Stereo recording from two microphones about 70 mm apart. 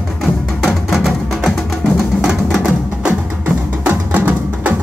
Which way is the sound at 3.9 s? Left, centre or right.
Right.